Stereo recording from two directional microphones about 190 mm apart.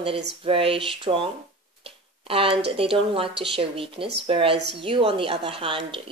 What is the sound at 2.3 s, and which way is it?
A woman's voice, 30° right (ahead or behind).